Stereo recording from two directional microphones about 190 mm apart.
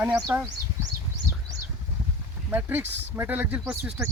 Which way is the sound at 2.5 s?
10° right (ahead or behind).